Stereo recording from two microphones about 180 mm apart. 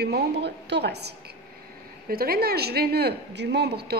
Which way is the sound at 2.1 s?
55° right (ahead or behind).